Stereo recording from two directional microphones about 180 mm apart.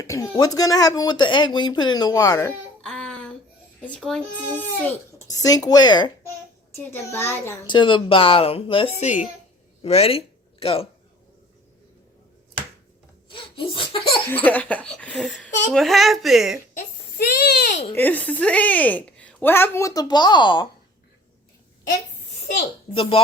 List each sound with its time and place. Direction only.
0.0 s speech: 20° left (ahead or behind)
2.8 s a sound: 5° left (ahead or behind)
3.8 s a child's voice: 5° left (ahead or behind)
7.7 s speech: 25° left (ahead or behind)
13.3 s laughter: 30° left (ahead or behind)
14.3 s a woman's voice: 10° left (ahead or behind)
16.7 s a sound: 55° left (ahead or behind)
17.9 s a woman's voice: 10° left (ahead or behind); by 20.7 s 25° left (ahead or behind)
23.0 s speech: 30° left (ahead or behind)